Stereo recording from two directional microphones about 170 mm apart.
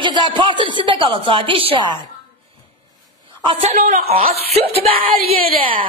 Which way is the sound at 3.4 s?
30° right (ahead or behind).